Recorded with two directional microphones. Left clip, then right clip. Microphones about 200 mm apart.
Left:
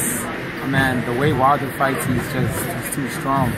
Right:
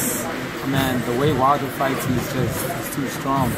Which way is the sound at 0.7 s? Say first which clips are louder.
Left 3 dB; 5° right (ahead or behind).